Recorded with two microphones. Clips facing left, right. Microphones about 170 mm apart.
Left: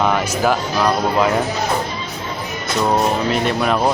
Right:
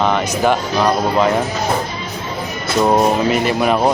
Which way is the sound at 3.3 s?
5° right (ahead or behind).